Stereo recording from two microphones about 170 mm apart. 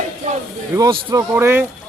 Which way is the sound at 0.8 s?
20° right (ahead or behind).